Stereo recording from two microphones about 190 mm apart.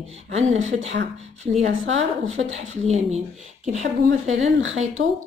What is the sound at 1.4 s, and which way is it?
Speech, 35° right (ahead or behind).